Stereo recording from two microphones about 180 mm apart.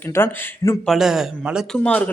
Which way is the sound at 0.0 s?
10° left (ahead or behind).